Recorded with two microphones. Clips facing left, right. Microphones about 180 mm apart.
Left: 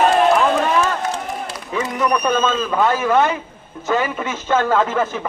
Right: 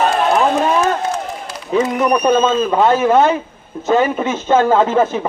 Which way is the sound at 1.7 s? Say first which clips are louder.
Right 5 dB; 25° right (ahead or behind).